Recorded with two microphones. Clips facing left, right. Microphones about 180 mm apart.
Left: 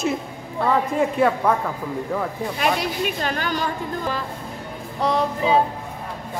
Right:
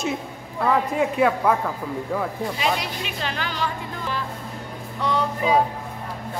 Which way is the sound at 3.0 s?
45° left (ahead or behind).